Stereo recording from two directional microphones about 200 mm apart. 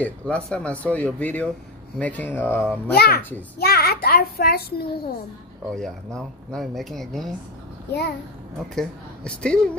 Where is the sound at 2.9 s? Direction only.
50° left (ahead or behind).